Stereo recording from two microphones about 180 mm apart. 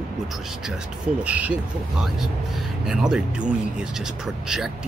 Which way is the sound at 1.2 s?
5° right (ahead or behind).